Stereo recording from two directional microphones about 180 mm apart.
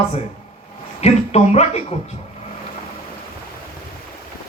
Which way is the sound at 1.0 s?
35° left (ahead or behind).